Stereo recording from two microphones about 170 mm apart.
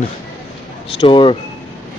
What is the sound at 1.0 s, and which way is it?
Speech, 30° left (ahead or behind).